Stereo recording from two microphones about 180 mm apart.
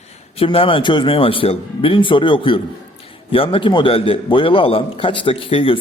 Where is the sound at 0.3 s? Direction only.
30° left (ahead or behind).